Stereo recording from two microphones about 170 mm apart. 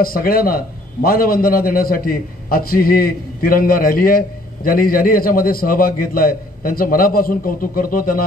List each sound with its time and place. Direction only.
0.0 s a man's voice: 60° left (ahead or behind)